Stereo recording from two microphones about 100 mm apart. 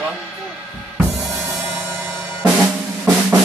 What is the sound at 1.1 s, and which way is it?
Drum kit, centre (ahead or behind).